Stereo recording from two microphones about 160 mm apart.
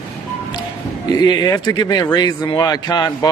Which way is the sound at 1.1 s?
25° left (ahead or behind).